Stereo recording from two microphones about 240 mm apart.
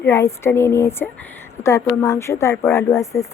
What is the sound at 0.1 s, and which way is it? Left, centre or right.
Speech, centre.